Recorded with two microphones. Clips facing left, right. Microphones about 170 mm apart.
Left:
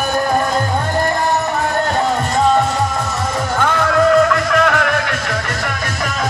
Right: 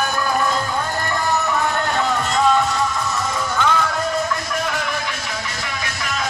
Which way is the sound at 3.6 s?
70° left (ahead or behind).